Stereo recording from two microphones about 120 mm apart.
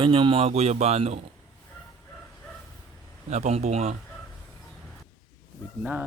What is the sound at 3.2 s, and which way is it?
Speech, 75° right (ahead or behind).